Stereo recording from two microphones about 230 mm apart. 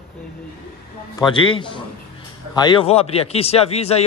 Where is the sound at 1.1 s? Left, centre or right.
Left.